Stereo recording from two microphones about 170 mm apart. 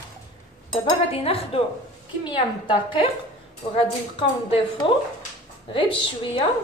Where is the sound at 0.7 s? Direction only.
35° left (ahead or behind).